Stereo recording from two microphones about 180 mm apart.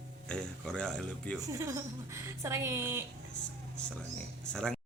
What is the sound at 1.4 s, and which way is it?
A woman's voice, 20° right (ahead or behind).